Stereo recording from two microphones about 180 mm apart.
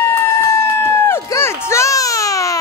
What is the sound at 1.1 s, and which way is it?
Baby cry, 15° left (ahead or behind).